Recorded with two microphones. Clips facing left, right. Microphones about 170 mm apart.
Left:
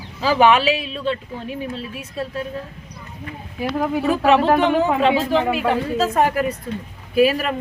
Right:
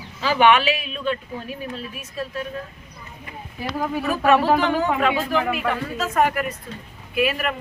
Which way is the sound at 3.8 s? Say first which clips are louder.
Left 3 dB; 15° left (ahead or behind).